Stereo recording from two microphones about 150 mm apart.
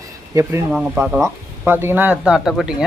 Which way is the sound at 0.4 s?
20° right (ahead or behind).